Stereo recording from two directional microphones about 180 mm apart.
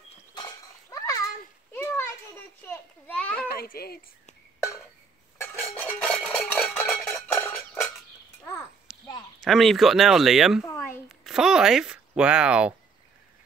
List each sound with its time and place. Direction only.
0.3 s chink: 20° left (ahead or behind)
1.7 s children playing: 15° left (ahead or behind)
3.4 s a child's voice: 55° left (ahead or behind)
5.4 s dishes: 15° left (ahead or behind)
6.0 s a sound: centre (ahead or behind)
7.3 s music: 10° left (ahead or behind)
8.9 s a sound: 5° right (ahead or behind)
9.4 s speech: centre (ahead or behind)
10.6 s a sound: 15° left (ahead or behind)
11.1 s speech: centre (ahead or behind)